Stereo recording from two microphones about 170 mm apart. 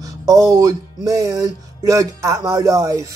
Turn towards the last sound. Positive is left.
turn(degrees=-20)  # may be behind; listen again after turning